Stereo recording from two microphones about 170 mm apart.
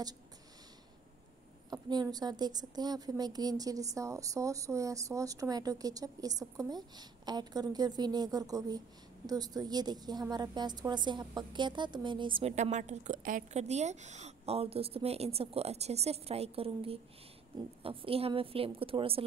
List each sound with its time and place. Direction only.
1.7 s speech: 25° right (ahead or behind)
12.5 s a woman's voice: 45° right (ahead or behind)